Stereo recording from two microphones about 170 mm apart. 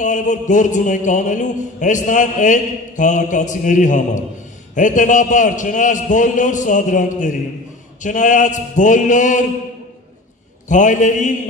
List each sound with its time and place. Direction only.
0.0 s mantra: 45° left (ahead or behind)
10.7 s mantra: 45° left (ahead or behind)